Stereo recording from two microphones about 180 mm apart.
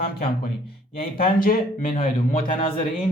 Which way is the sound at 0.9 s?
55° left (ahead or behind).